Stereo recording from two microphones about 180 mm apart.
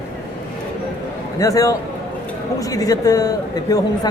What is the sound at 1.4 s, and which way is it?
A woman's voice, 20° left (ahead or behind).